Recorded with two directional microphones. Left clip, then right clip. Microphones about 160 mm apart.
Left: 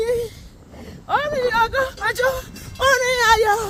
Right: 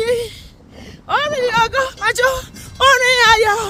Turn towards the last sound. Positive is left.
turn(degrees=-20)  # may be behind; listen again after turning